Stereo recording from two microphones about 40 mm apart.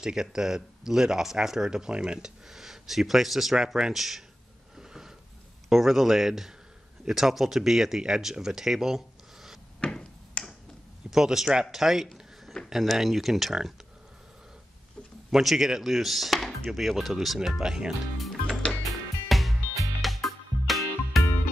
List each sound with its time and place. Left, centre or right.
0.0 s speech: centre
4.7 s a sound: centre
5.7 s speech: centre
9.8 s a sound: left
10.4 s finger snapping: left
11.1 s a man's voice: centre
15.3 s speech: centre
17.6 s speech: centre
19.2 s music: centre